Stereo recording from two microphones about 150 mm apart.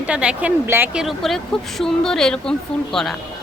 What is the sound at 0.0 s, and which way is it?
A woman's voice, 5° right (ahead or behind).